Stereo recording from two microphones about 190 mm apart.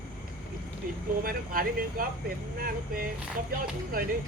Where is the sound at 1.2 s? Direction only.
50° right (ahead or behind).